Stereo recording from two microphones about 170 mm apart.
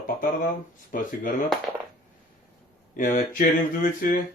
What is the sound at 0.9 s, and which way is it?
Speech, 50° left (ahead or behind).